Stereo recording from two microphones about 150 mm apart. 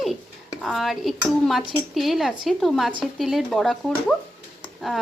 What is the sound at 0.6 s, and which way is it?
Speech, centre (ahead or behind).